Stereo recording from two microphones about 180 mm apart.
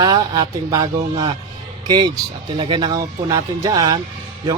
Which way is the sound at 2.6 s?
25° right (ahead or behind).